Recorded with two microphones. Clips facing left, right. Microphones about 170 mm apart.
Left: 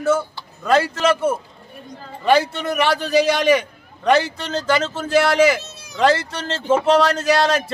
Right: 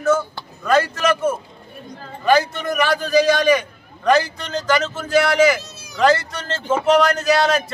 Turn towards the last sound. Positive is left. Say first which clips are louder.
# even
turn(degrees=25)  # may be behind; listen again after turning